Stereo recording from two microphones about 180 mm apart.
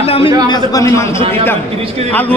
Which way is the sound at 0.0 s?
35° left (ahead or behind).